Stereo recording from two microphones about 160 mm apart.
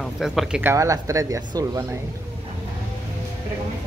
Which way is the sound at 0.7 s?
20° right (ahead or behind).